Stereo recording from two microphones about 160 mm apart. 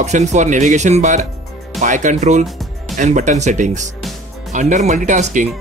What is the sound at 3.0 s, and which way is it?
Speech, 50° right (ahead or behind).